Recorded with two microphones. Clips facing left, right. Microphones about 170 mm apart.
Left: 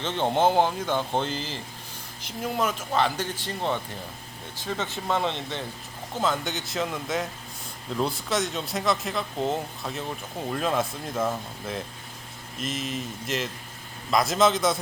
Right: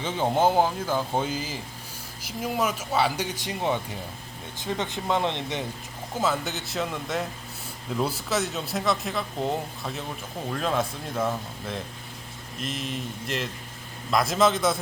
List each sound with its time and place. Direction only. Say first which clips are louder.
0.0 s speech: even; 5° right (ahead or behind)
6.1 s speech: even; 5° right (ahead or behind)